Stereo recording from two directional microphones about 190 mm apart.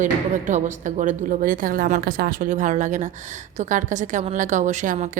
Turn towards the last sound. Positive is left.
turn(degrees=-40)  # may be behind; listen again after turning